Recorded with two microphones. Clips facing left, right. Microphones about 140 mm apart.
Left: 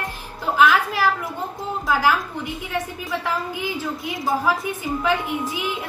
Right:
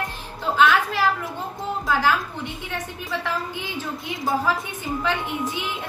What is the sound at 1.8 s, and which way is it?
Speech, 5° left (ahead or behind).